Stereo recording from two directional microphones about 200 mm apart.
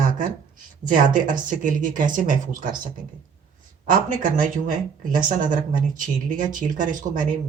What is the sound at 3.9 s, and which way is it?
Speech, 40° right (ahead or behind).